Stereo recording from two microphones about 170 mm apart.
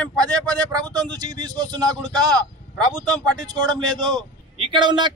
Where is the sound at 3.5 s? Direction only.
25° right (ahead or behind).